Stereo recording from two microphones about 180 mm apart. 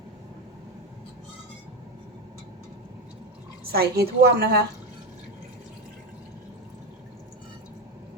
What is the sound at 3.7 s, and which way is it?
Speech, 60° right (ahead or behind).